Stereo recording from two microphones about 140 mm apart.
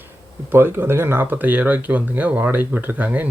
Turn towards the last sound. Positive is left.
turn(degrees=-10)  # may be behind; listen again after turning